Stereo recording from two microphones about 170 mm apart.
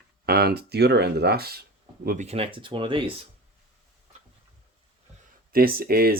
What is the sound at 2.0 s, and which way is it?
Speech, 40° right (ahead or behind).